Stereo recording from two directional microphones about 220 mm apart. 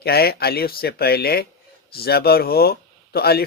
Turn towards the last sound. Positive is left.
turn(degrees=45)  # may be behind; listen again after turning